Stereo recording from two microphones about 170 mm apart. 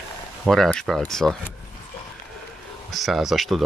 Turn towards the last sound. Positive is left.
turn(degrees=0)  # may be behind; listen again after turning